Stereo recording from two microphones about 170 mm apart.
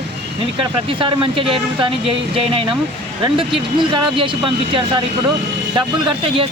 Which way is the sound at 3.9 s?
30° right (ahead or behind).